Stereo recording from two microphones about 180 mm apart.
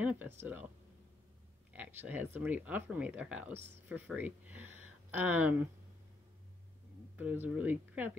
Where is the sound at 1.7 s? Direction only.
10° right (ahead or behind).